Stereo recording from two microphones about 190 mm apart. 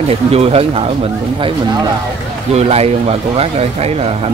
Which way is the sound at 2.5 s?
35° right (ahead or behind).